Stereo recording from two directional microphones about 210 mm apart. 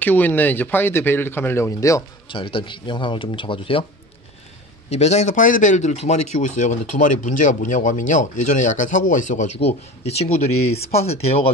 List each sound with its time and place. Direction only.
0.0 s a man's voice: 10° left (ahead or behind); by 3.8 s 25° left (ahead or behind)
4.8 s a man's voice: 30° left (ahead or behind)